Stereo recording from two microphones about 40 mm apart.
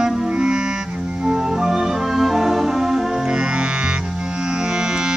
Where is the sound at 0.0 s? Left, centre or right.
Centre.